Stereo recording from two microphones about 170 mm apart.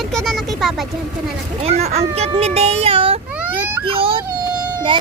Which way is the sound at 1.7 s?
40° right (ahead or behind).